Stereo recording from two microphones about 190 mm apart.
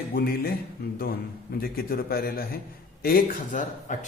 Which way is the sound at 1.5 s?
50° left (ahead or behind).